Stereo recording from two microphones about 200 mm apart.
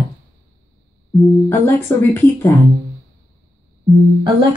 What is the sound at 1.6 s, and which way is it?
Speech, 10° left (ahead or behind).